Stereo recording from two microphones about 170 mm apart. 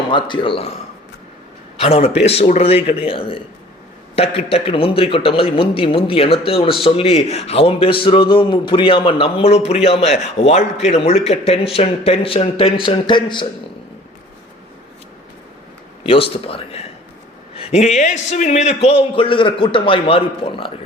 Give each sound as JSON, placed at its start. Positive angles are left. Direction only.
{"t": 0.1, "sound": "speech", "side_deg": 30}
{"t": 1.8, "sound": "speech", "side_deg": 35}
{"t": 16.0, "sound": "speech", "side_deg": 35}